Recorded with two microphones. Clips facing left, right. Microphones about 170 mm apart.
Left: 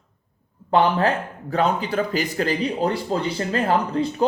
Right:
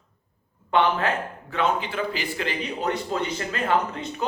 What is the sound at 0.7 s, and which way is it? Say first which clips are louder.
A man's voice: left 3 dB; 35° left (ahead or behind).